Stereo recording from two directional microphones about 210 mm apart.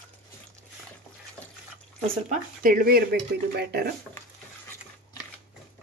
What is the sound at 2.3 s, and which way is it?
Speech, 40° right (ahead or behind).